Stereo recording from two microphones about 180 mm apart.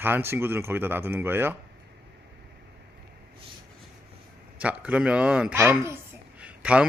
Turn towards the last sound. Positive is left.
turn(degrees=-5)  # may be behind; listen again after turning